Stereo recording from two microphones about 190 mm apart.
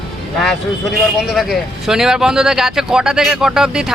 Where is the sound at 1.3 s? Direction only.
Centre (ahead or behind).